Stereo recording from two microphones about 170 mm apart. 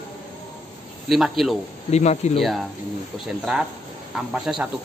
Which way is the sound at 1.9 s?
40° left (ahead or behind).